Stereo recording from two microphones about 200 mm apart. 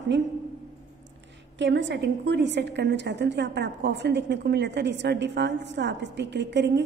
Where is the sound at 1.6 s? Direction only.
65° right (ahead or behind).